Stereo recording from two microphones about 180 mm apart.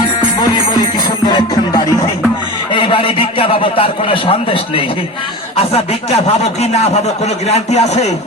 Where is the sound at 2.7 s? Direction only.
25° left (ahead or behind).